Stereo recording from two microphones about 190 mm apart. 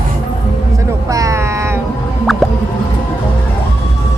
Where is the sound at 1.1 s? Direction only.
15° right (ahead or behind).